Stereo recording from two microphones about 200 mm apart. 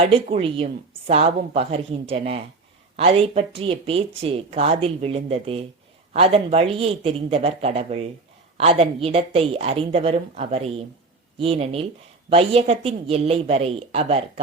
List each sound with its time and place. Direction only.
0.0 s a woman's voice: 30° right (ahead or behind)